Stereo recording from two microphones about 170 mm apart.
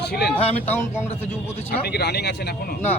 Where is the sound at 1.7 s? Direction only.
70° left (ahead or behind).